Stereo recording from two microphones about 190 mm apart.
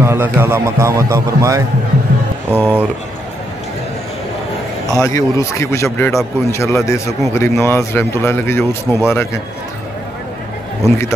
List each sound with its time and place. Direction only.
0.0 s speech: 10° right (ahead or behind)
5.0 s speech: 15° left (ahead or behind)